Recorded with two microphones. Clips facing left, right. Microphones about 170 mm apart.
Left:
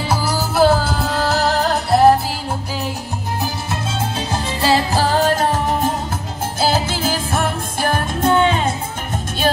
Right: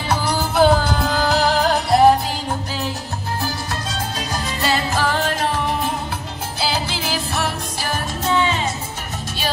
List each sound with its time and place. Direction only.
0.1 s music: 5° left (ahead or behind)
4.3 s music: 30° left (ahead or behind); by 8.7 s 55° left (ahead or behind)